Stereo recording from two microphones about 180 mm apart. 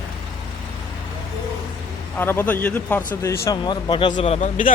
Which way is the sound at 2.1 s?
10° left (ahead or behind).